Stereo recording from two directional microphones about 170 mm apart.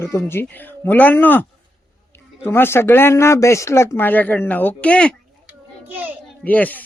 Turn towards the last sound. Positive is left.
turn(degrees=10)  # may be behind; listen again after turning